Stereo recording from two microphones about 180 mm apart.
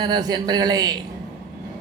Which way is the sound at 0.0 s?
20° right (ahead or behind).